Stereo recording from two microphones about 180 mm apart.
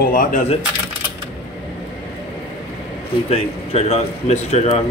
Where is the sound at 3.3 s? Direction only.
35° left (ahead or behind).